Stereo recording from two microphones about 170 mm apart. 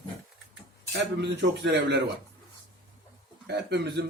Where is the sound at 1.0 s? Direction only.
80° right.